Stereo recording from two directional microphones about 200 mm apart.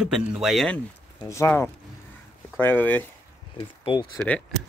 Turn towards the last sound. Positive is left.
turn(degrees=5)  # may be behind; listen again after turning